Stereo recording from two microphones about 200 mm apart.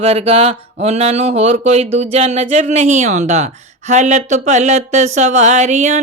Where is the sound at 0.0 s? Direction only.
30° right (ahead or behind).